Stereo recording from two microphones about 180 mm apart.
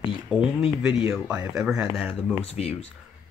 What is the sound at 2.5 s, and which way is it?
Speech, 35° left (ahead or behind).